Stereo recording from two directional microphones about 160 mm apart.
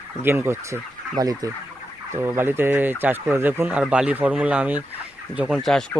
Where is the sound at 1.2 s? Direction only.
20° right (ahead or behind).